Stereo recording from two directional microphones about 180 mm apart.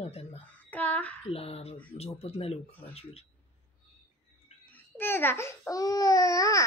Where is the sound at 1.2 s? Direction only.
35° left (ahead or behind).